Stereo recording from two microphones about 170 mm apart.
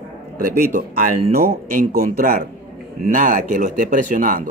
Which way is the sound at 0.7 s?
55° right (ahead or behind).